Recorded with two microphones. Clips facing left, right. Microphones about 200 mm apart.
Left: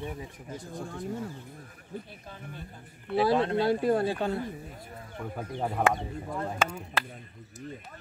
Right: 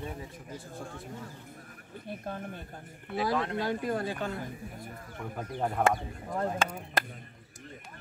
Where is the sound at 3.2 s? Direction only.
30° left (ahead or behind).